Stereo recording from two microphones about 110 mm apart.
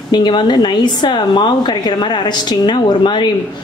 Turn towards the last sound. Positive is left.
turn(degrees=45)  # may be behind; listen again after turning